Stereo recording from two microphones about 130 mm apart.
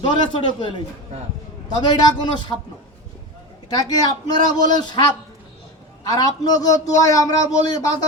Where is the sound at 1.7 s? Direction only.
35° left (ahead or behind).